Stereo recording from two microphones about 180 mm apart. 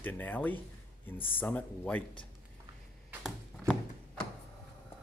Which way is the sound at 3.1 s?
5° right (ahead or behind).